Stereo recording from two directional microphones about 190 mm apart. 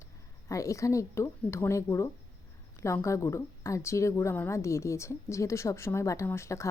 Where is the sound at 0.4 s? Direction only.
15° left (ahead or behind).